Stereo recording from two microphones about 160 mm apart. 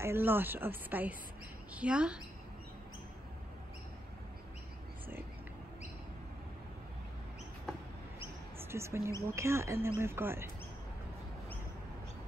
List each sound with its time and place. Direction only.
0.0 s speech: 15° right (ahead or behind)
8.5 s speech: 15° right (ahead or behind)